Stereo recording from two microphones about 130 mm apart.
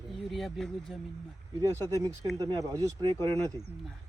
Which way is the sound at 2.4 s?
30° right (ahead or behind).